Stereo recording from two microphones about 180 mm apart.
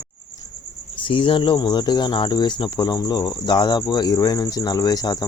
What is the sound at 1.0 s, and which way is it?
Cricket, 30° left (ahead or behind).